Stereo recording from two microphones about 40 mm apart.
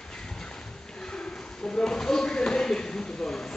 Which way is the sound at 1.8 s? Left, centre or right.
Centre.